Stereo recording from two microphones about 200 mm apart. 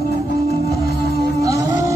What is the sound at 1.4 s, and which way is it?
Music, 15° right (ahead or behind).